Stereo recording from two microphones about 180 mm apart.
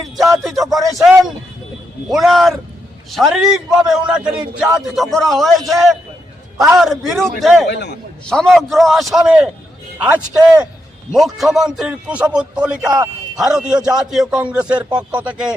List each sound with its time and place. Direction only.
0.4 s music: centre (ahead or behind)
2.0 s a man's voice: centre (ahead or behind)
7.7 s a man's voice: 70° left (ahead or behind)
8.3 s a man's voice: 5° left (ahead or behind)